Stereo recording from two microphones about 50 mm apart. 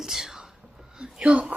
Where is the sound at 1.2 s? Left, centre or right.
Right.